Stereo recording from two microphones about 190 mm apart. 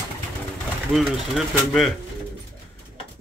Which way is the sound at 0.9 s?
Centre (ahead or behind).